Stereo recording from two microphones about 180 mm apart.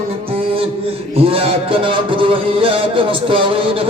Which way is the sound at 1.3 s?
30° right (ahead or behind).